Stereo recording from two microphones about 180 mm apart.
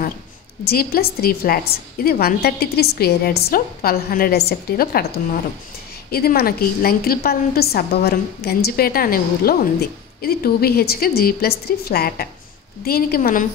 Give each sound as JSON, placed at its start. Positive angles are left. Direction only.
{"t": 0.7, "sound": "a woman's voice", "side_deg": 55}